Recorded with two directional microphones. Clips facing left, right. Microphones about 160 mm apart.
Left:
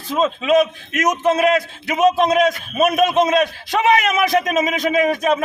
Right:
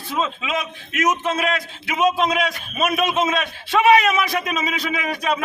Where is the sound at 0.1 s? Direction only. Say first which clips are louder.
Left 8 dB; 40° left (ahead or behind).